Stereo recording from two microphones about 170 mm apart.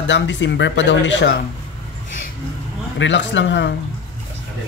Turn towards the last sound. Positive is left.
turn(degrees=90)